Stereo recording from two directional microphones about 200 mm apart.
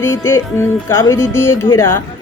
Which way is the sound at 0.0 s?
10° left (ahead or behind).